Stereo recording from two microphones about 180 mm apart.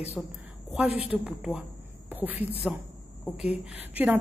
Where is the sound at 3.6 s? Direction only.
10° right (ahead or behind).